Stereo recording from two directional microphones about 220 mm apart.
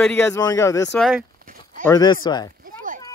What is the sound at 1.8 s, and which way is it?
Speech, 20° left (ahead or behind).